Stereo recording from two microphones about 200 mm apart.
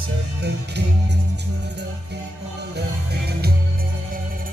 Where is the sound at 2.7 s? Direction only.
55° right (ahead or behind).